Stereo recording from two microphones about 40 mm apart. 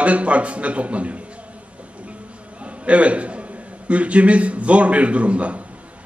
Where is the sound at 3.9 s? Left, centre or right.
Right.